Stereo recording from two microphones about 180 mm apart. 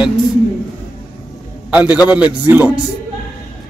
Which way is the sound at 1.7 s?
5° right (ahead or behind).